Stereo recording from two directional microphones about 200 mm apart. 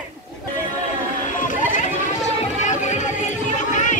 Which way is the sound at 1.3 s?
40° left (ahead or behind).